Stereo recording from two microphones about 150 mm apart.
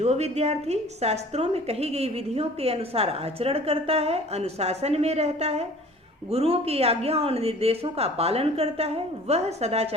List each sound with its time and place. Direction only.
0.0 s a woman's voice: 45° right (ahead or behind)